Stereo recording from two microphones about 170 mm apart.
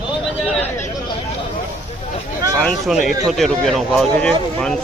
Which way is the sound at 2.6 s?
Centre (ahead or behind).